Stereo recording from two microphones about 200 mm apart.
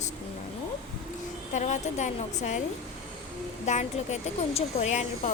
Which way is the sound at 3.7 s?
35° left (ahead or behind).